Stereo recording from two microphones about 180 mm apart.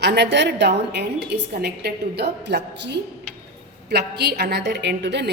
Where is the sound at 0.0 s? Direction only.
70° right (ahead or behind).